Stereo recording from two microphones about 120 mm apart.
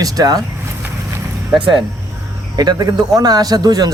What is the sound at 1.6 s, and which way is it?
Speech, 45° right (ahead or behind).